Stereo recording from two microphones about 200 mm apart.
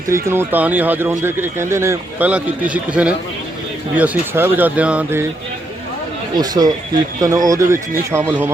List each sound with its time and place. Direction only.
0.1 s speech: 10° right (ahead or behind)
6.3 s speech: 20° right (ahead or behind)